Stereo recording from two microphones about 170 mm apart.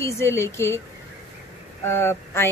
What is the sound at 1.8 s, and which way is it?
Speech, 15° left (ahead or behind).